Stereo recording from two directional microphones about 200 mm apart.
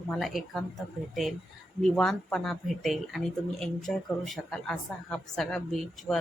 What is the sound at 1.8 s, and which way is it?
A woman's voice, centre (ahead or behind).